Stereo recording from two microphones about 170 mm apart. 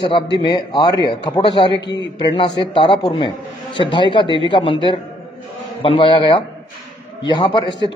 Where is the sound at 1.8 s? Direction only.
90° left.